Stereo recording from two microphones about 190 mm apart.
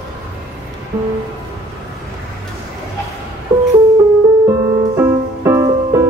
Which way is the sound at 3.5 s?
20° right (ahead or behind).